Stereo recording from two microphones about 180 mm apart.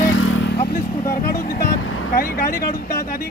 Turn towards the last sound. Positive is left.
turn(degrees=55)  # may be behind; listen again after turning